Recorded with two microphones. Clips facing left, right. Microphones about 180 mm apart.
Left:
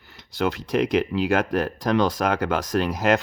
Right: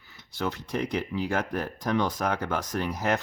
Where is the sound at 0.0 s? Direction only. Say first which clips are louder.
Left 7 dB; 80° left.